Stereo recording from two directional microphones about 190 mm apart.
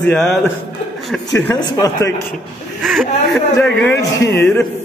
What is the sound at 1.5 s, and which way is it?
Speech, 25° left (ahead or behind).